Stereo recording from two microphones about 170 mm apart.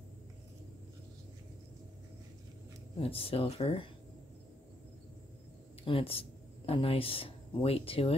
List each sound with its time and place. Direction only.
3.0 s speech: 35° left (ahead or behind)
5.9 s speech: 35° left (ahead or behind)